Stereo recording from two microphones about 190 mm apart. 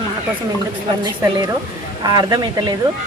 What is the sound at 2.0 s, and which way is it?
Speech, 20° right (ahead or behind).